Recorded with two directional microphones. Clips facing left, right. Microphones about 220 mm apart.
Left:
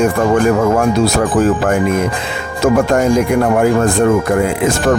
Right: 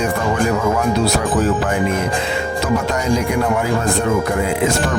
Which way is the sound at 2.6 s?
50° left (ahead or behind).